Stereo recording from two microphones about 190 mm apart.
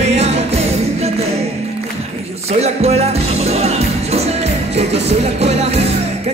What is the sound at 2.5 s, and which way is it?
Music, 35° right (ahead or behind).